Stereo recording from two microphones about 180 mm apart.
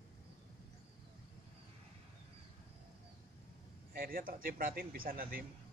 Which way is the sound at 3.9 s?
55° right (ahead or behind).